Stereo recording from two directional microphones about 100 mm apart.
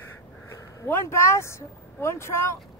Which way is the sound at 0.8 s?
25° left (ahead or behind).